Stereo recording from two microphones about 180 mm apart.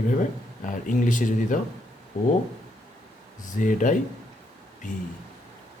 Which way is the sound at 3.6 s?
45° left (ahead or behind).